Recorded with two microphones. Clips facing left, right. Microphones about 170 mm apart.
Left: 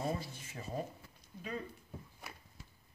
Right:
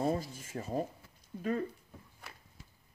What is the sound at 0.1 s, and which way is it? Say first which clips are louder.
Speech: right 5 dB; 40° right (ahead or behind).